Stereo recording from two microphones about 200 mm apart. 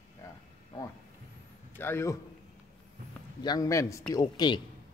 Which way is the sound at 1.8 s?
10° left (ahead or behind).